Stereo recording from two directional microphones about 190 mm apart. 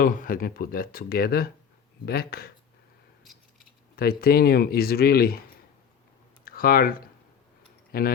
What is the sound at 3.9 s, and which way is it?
Speech, 55° left (ahead or behind).